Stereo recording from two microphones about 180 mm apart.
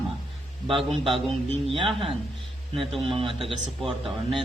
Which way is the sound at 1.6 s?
30° right (ahead or behind).